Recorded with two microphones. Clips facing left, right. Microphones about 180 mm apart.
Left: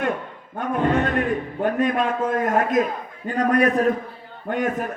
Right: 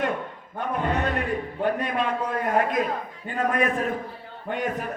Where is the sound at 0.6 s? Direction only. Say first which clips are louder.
Left 5 dB; 50° left (ahead or behind).